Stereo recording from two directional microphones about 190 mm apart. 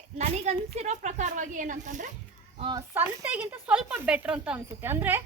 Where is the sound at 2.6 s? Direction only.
25° right (ahead or behind).